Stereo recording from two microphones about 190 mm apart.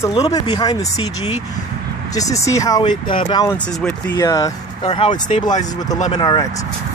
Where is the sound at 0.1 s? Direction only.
20° left (ahead or behind).